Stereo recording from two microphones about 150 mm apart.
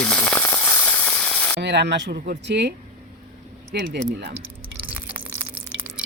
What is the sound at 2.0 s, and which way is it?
Speech, 80° right.